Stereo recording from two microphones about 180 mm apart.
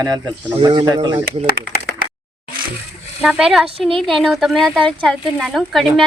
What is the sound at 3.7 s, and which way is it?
Speech, 30° right (ahead or behind).